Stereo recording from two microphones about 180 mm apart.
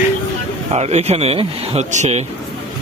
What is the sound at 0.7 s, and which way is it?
Speech, 35° right (ahead or behind).